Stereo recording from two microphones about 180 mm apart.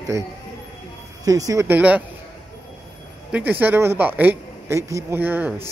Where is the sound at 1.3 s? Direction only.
20° right (ahead or behind).